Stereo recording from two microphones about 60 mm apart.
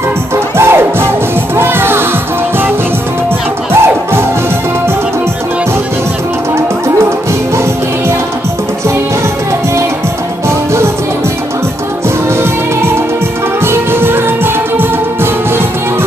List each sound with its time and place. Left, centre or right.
0.6 s music: right
3.7 s music: right
13.7 s music: right